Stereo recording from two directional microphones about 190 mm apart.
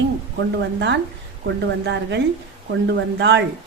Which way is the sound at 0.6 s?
70° right (ahead or behind).